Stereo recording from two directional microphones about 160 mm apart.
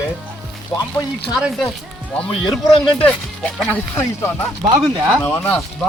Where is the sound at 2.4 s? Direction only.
30° left (ahead or behind).